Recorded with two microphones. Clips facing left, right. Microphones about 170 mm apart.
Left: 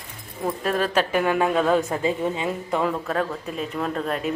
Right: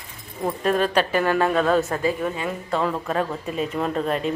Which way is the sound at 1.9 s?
20° left (ahead or behind).